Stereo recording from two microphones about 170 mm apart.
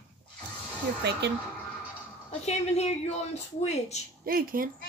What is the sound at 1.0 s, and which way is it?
Speech, 90° right.